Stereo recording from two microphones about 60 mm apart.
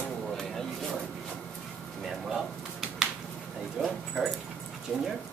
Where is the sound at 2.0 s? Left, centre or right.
Centre.